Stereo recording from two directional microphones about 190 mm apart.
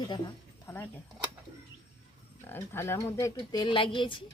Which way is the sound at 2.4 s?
10° left (ahead or behind).